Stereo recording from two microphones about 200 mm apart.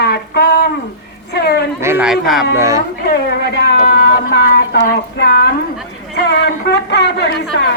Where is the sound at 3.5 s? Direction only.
50° left (ahead or behind).